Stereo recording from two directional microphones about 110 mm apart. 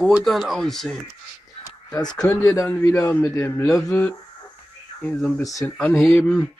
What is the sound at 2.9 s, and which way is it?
Speech, 20° left (ahead or behind).